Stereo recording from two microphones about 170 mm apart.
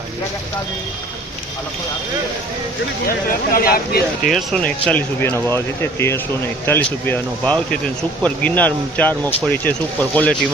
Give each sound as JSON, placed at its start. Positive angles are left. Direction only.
{"t": 3.1, "sound": "speech", "side_deg": 60}
{"t": 4.2, "sound": "speech", "side_deg": 0}